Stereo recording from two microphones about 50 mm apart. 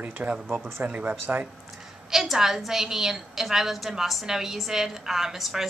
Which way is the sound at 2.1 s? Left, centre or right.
Centre.